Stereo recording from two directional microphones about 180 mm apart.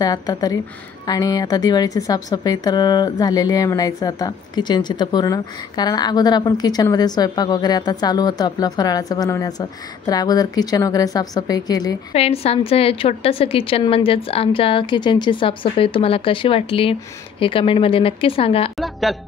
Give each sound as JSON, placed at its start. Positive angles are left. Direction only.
{"t": 0.0, "sound": "a woman's voice", "side_deg": 20}
{"t": 12.1, "sound": "a woman's voice", "side_deg": 35}
{"t": 18.8, "sound": "speech", "side_deg": 0}